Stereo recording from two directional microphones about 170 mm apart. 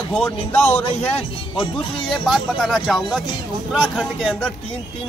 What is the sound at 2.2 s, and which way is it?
Speech, centre (ahead or behind).